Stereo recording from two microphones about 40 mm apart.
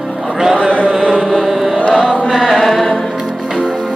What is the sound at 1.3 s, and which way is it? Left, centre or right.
Chant, centre.